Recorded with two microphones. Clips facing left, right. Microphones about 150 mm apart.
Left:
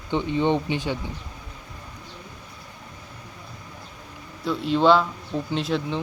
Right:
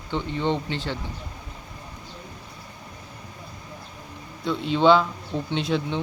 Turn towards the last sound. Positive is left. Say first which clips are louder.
# even
turn(degrees=0)  # may be behind; listen again after turning